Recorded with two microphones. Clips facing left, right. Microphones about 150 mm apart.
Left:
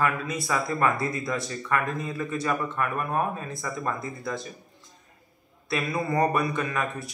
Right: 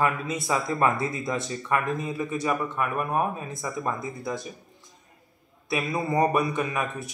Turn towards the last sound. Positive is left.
turn(degrees=-15)  # may be behind; listen again after turning